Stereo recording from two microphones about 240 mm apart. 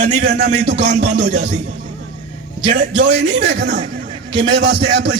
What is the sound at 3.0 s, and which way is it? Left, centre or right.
A man's voice, right.